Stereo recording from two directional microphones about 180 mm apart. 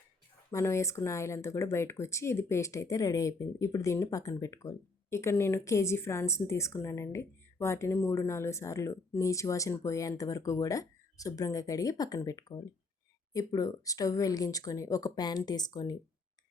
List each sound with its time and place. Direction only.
0.5 s speech: 15° left (ahead or behind)